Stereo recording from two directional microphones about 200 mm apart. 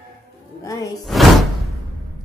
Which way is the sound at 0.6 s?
15° left (ahead or behind).